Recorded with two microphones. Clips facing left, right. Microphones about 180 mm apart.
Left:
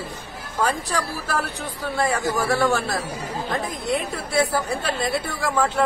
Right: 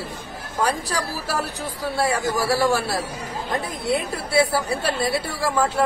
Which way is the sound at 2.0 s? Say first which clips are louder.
Even; 5° right (ahead or behind).